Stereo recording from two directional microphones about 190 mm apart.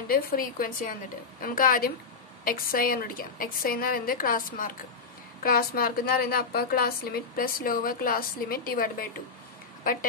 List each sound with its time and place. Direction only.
0.1 s a woman's voice: 50° left (ahead or behind)